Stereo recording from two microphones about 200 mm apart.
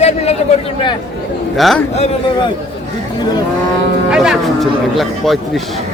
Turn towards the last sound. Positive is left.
turn(degrees=0)  # may be behind; listen again after turning